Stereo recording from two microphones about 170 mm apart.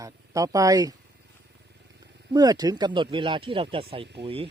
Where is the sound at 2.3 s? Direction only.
20° right (ahead or behind).